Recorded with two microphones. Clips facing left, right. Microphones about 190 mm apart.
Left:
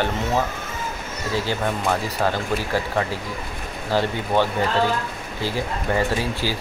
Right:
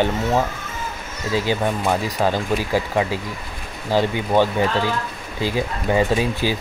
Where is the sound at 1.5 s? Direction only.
15° right (ahead or behind).